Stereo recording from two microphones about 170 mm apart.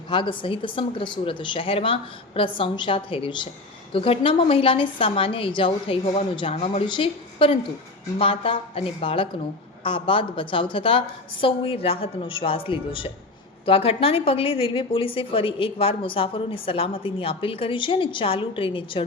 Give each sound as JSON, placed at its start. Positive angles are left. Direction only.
{"t": 0.1, "sound": "a woman's voice", "side_deg": 30}